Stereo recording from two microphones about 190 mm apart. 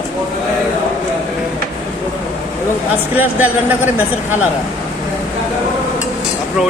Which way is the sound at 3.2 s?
10° right (ahead or behind).